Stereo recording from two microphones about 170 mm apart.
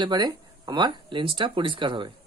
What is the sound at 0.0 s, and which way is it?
Speech, 25° right (ahead or behind).